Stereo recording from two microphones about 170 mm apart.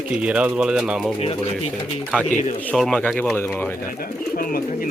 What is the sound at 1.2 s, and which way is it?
Speech, 40° left (ahead or behind).